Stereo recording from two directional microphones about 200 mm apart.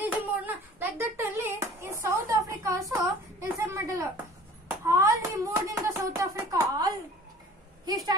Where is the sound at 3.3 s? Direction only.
15° right (ahead or behind).